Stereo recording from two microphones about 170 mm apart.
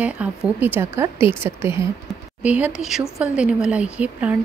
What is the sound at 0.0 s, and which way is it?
Speech, 10° right (ahead or behind).